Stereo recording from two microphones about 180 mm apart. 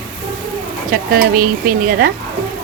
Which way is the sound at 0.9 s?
55° right (ahead or behind).